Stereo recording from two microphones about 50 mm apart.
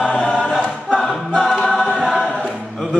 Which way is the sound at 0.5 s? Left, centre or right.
Centre.